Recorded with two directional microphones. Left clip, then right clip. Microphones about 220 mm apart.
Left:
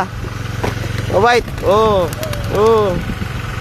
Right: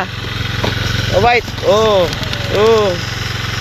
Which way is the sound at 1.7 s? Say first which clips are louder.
Right 2 dB; 15° left (ahead or behind).